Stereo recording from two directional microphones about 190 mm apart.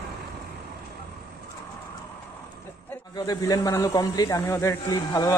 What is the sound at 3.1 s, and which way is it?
Speech, 20° left (ahead or behind).